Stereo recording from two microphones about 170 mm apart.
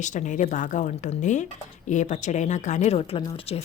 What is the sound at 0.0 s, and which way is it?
A woman's voice, 45° left (ahead or behind).